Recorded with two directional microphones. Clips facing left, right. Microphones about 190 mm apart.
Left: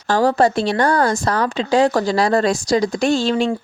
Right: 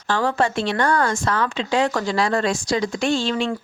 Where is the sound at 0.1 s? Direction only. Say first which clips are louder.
Left 6 dB; 40° left (ahead or behind).